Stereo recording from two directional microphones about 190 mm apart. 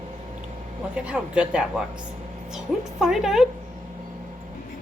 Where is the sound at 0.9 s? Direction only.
5° right (ahead or behind).